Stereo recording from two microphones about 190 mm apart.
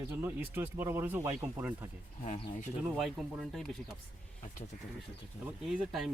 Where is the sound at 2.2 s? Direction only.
30° left (ahead or behind).